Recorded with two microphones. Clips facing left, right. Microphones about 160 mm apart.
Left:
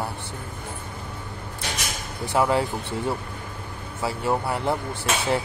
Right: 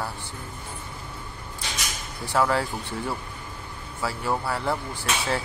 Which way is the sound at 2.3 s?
20° left (ahead or behind).